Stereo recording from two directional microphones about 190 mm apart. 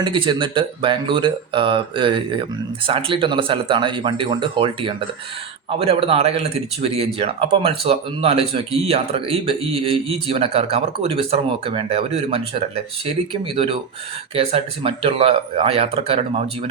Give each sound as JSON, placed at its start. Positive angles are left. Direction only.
{"t": 0.0, "sound": "speech", "side_deg": -25}